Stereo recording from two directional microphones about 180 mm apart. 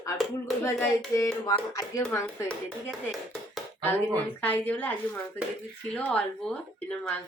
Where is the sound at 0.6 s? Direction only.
15° left (ahead or behind).